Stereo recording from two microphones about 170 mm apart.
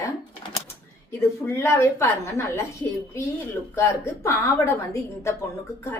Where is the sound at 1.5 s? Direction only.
15° left (ahead or behind).